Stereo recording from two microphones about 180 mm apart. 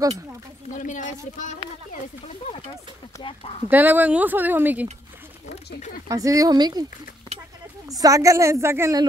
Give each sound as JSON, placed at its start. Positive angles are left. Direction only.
{"t": 0.7, "sound": "speech", "side_deg": 45}
{"t": 3.6, "sound": "speech", "side_deg": -10}
{"t": 6.0, "sound": "speech", "side_deg": -20}
{"t": 7.9, "sound": "speech", "side_deg": -20}